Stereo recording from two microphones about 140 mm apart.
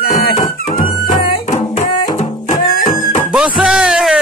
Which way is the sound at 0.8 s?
65° left (ahead or behind).